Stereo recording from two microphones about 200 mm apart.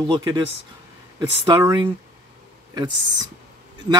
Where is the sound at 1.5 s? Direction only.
20° right (ahead or behind).